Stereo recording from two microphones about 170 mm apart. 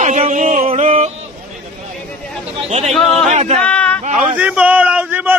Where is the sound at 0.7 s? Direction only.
40° right (ahead or behind).